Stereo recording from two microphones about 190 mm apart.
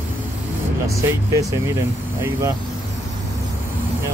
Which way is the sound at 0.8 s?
15° right (ahead or behind).